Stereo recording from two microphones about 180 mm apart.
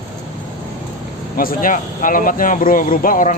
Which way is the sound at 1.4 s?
50° left (ahead or behind).